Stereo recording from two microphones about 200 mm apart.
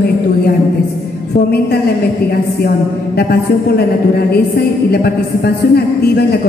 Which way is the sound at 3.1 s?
50° left (ahead or behind).